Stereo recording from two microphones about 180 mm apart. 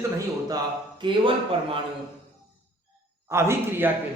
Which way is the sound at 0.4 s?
25° right (ahead or behind).